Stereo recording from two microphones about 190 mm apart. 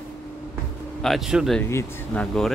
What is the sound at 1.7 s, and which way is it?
Speech, 15° left (ahead or behind).